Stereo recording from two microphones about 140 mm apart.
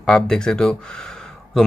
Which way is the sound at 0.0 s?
5° left (ahead or behind).